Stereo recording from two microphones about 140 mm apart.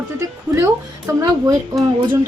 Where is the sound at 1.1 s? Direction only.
25° right (ahead or behind).